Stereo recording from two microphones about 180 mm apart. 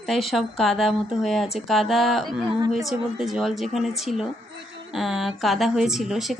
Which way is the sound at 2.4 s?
20° right (ahead or behind).